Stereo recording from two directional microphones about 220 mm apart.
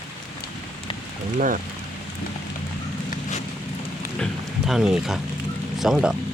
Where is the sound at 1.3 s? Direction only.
35° right (ahead or behind).